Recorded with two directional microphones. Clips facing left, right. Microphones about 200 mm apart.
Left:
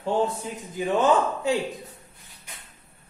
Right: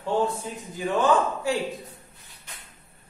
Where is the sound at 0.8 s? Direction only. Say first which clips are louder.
Left 1 dB; 20° left (ahead or behind).